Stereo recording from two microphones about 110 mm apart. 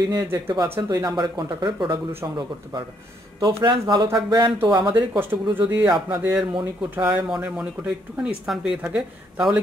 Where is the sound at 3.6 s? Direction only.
40° right (ahead or behind).